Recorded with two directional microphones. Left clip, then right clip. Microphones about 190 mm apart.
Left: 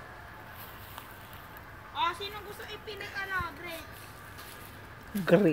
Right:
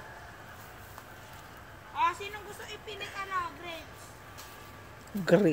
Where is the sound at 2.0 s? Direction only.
10° left (ahead or behind).